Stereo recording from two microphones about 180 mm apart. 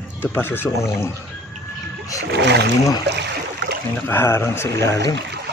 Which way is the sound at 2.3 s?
70° right (ahead or behind).